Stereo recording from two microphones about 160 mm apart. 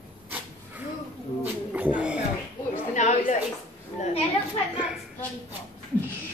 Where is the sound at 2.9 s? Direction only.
50° left (ahead or behind).